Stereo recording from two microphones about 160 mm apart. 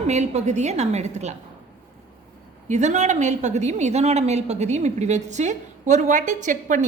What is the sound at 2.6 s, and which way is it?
A woman's voice, 50° right (ahead or behind).